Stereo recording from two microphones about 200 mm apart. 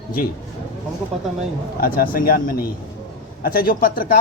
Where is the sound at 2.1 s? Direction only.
45° left (ahead or behind).